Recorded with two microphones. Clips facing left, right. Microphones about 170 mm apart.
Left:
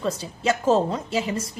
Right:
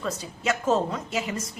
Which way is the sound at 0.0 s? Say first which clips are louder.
Left 4 dB; 30° left (ahead or behind).